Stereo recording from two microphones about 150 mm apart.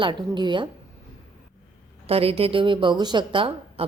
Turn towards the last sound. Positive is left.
turn(degrees=-35)  # may be behind; listen again after turning